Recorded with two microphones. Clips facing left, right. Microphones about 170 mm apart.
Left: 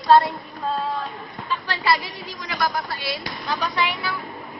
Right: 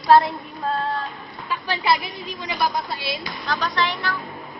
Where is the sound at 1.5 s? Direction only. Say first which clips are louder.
Right 1 dB; 15° right (ahead or behind).